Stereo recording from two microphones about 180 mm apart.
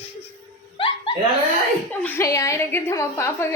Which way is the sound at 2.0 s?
10° left (ahead or behind).